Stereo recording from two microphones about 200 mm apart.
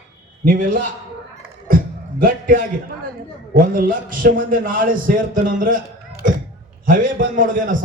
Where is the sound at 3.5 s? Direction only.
45° right (ahead or behind).